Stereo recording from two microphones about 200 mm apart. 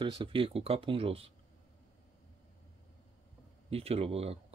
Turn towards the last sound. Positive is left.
turn(degrees=-30)  # may be behind; listen again after turning